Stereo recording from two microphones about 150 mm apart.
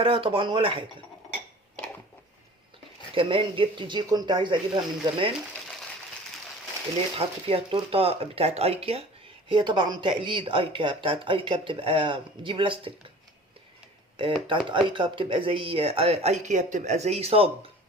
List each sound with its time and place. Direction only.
0.0 s speech: 35° right (ahead or behind)
3.2 s speech: 35° right (ahead or behind)
7.2 s speech: 40° right (ahead or behind)
14.7 s speech: 35° right (ahead or behind)